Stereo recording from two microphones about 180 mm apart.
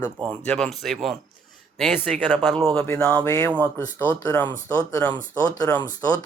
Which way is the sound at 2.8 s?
10° left (ahead or behind).